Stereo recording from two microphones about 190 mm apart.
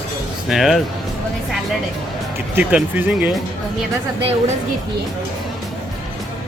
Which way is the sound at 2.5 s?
10° right (ahead or behind).